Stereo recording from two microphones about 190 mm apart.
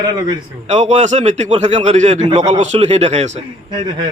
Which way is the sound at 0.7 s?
35° right (ahead or behind).